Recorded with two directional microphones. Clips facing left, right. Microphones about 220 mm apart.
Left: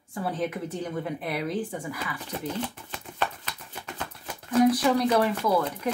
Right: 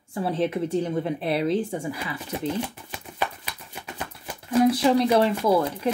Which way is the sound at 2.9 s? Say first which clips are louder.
Right 1 dB; 10° right (ahead or behind).